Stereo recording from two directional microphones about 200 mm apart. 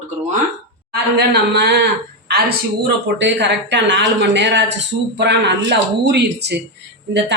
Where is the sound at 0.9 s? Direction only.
55° right (ahead or behind).